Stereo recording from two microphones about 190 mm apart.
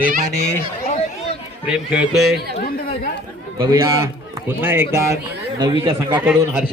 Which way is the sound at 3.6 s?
20° right (ahead or behind).